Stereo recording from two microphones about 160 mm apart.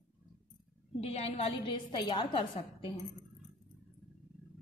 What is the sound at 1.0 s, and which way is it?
A woman's voice, 40° left (ahead or behind).